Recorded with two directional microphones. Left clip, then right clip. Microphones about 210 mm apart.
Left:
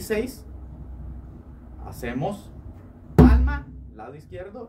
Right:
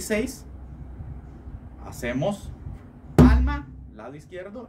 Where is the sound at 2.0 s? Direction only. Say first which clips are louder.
Right 2 dB; 15° right (ahead or behind).